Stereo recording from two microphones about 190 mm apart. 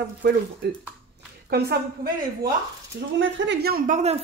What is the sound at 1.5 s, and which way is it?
Speech, 55° right (ahead or behind).